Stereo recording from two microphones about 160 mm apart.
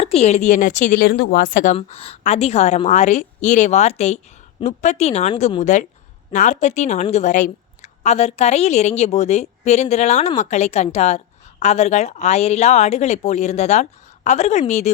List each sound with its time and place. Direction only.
0.0 s a woman's voice: 40° left (ahead or behind); by 1.7 s 60° left (ahead or behind)
1.7 s a woman's voice: 40° left (ahead or behind)